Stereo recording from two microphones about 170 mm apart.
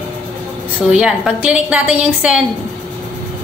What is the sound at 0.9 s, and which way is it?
A woman's voice, 5° right (ahead or behind).